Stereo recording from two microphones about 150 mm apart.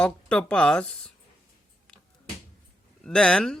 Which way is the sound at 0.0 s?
5° left (ahead or behind).